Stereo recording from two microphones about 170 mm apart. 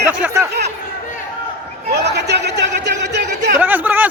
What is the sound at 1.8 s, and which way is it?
Speech, 75° right (ahead or behind).